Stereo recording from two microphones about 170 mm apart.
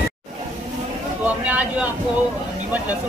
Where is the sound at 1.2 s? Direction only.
10° right (ahead or behind).